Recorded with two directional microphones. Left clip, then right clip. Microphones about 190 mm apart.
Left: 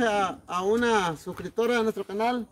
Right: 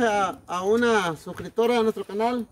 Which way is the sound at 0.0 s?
5° left (ahead or behind).